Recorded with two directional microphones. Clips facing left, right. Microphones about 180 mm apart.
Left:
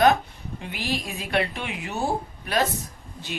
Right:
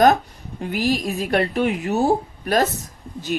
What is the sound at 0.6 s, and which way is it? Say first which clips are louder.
A woman's voice: right 9 dB; 45° right (ahead or behind).